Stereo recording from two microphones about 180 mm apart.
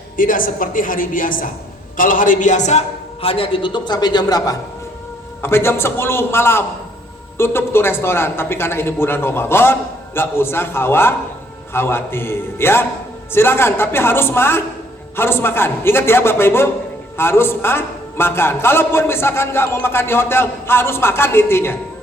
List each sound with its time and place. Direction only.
0.2 s a woman's voice: 50° left (ahead or behind); by 21.8 s 15° left (ahead or behind)